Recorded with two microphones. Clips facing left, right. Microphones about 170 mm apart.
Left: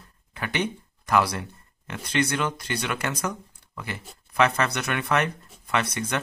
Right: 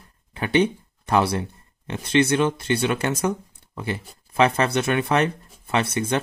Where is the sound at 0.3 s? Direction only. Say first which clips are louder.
Right 8 dB; 30° right (ahead or behind).